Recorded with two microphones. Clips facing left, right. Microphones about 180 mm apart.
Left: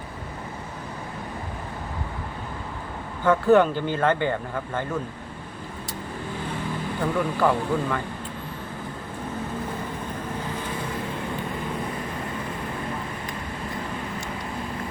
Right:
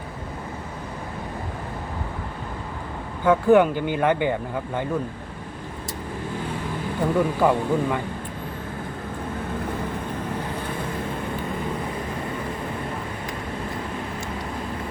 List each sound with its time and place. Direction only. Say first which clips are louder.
3.2 s speech: right 1 dB; 10° right (ahead or behind)
7.0 s speech: right 3 dB; 15° right (ahead or behind)